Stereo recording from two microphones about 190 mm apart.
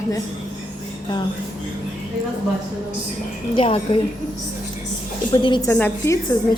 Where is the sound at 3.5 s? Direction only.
30° left (ahead or behind).